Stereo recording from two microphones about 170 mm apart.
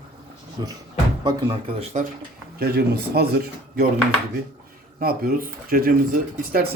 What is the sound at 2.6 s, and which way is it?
Speech, 70° right (ahead or behind).